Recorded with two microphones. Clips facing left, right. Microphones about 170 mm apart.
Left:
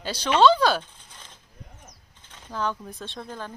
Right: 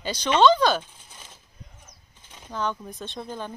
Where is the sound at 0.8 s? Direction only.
10° right (ahead or behind).